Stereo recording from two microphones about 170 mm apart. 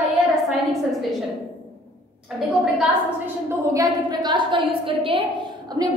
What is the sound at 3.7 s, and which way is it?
A woman's voice, 25° right (ahead or behind).